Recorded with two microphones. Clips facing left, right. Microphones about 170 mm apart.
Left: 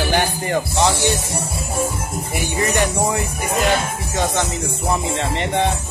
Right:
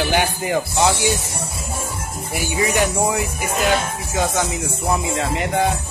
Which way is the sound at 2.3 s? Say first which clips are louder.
Right 1 dB; 5° right (ahead or behind).